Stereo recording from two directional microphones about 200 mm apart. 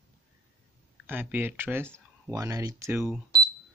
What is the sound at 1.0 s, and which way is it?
Speech, 10° right (ahead or behind).